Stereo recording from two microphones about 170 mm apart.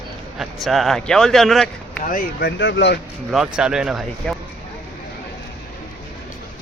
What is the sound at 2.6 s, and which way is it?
Speech, 90° left.